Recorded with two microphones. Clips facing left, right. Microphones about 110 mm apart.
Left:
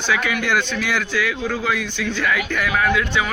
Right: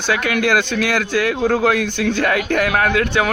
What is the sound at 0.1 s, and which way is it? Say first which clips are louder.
Speech: right 4 dB; 65° right (ahead or behind).